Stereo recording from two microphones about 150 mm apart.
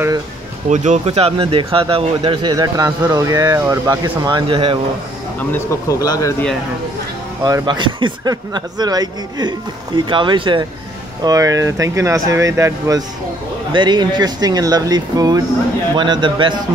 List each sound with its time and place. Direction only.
0.7 s speech: 55° right (ahead or behind)
1.0 s speech: 40° right (ahead or behind)
2.5 s a man's voice: 25° right (ahead or behind)
5.4 s speech: 15° left (ahead or behind)
7.4 s a man's voice: 30° right (ahead or behind)